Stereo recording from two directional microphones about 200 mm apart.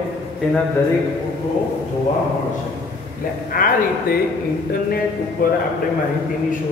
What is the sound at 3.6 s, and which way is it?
Speech, 45° left (ahead or behind).